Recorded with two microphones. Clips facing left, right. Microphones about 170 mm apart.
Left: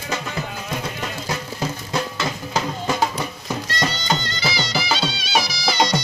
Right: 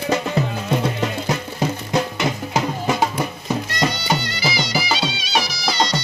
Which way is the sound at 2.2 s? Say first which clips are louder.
Right 3 dB; 20° right (ahead or behind).